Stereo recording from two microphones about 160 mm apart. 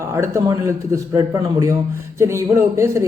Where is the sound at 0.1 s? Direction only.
20° right (ahead or behind).